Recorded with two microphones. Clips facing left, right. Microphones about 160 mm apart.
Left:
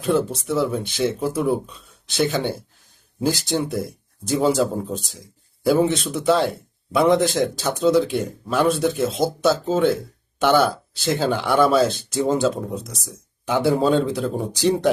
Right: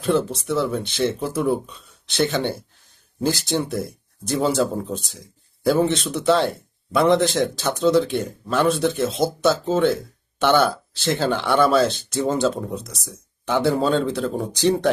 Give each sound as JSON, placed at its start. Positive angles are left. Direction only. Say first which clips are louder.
{"t": 0.0, "sound": "speech", "louder": "even", "side_deg": 10}